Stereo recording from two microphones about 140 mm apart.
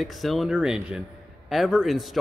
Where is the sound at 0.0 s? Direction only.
Centre (ahead or behind).